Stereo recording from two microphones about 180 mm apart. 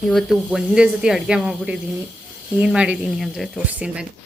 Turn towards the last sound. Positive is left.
turn(degrees=-5)  # may be behind; listen again after turning